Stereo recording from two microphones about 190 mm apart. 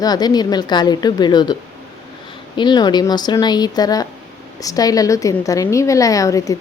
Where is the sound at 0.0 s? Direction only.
20° left (ahead or behind).